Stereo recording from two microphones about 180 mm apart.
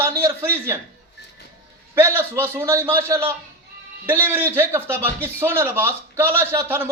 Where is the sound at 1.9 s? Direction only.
15° right (ahead or behind).